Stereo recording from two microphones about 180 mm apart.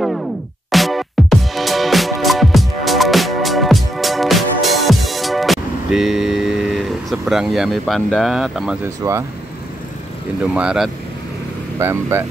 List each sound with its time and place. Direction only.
0.0 s music: centre (ahead or behind)
8.8 s speech: 15° right (ahead or behind)
10.4 s speech: 5° right (ahead or behind)